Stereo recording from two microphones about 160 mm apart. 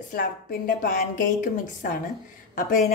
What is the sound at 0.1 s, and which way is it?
Speech, 60° left (ahead or behind).